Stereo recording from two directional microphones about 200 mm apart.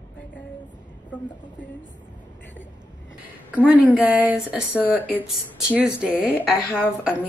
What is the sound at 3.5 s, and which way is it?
A woman's voice, 5° right (ahead or behind).